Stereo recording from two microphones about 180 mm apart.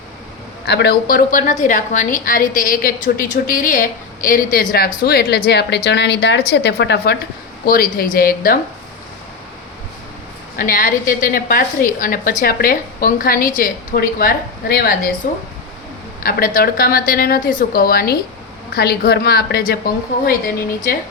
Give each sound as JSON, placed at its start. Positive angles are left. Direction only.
{"t": 0.6, "sound": "a woman's voice", "side_deg": 65}
{"t": 7.6, "sound": "a woman's voice", "side_deg": 55}
{"t": 10.6, "sound": "a woman's voice", "side_deg": 50}
{"t": 16.2, "sound": "a woman's voice", "side_deg": 50}